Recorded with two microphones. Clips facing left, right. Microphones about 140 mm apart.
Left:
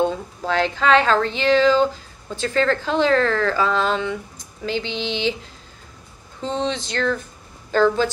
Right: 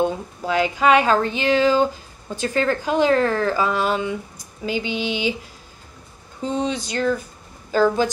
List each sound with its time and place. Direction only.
0.0 s speech: 10° right (ahead or behind)
6.4 s speech: 10° right (ahead or behind)